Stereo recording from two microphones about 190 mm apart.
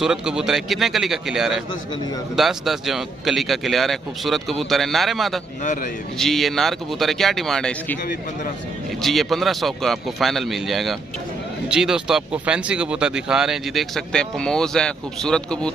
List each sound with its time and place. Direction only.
0.0 s speech: 5° right (ahead or behind)
5.6 s a man's voice: 40° left (ahead or behind)
6.1 s speech: centre (ahead or behind)
9.0 s speech: centre (ahead or behind)